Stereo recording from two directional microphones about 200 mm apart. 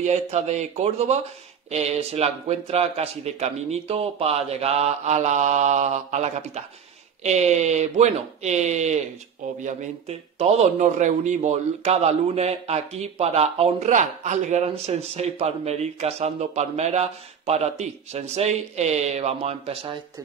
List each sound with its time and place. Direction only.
0.0 s a man's voice: 35° right (ahead or behind)